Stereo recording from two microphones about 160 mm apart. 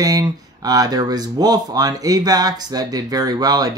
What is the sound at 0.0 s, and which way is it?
Speech, 25° right (ahead or behind).